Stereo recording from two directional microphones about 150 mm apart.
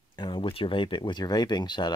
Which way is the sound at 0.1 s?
30° left (ahead or behind).